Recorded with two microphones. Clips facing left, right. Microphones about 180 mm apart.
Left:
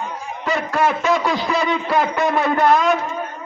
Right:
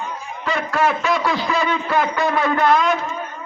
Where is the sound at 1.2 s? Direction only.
15° left (ahead or behind).